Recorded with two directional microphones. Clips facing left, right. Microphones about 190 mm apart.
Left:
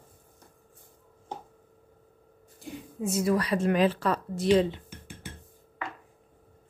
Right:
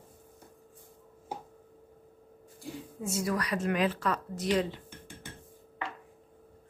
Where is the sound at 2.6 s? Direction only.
20° left (ahead or behind).